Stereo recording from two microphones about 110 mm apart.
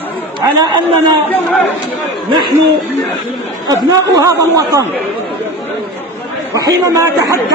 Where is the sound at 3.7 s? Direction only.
35° right (ahead or behind).